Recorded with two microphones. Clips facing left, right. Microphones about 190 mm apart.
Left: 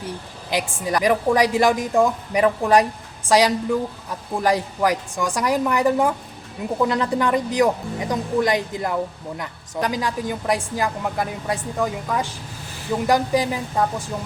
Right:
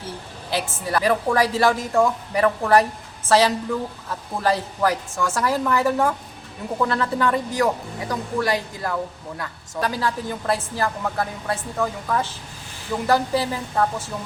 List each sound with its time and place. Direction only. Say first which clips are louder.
0.5 s speech: left 1 dB; 15° left (ahead or behind)